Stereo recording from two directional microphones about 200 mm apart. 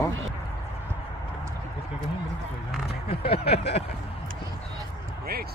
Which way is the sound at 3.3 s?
30° left (ahead or behind).